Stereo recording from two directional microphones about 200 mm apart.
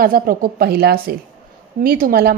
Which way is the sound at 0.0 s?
45° right (ahead or behind).